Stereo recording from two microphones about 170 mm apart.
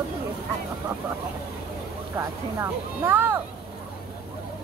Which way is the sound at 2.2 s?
15° right (ahead or behind).